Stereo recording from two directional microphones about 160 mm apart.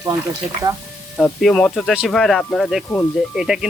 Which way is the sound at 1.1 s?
Centre (ahead or behind).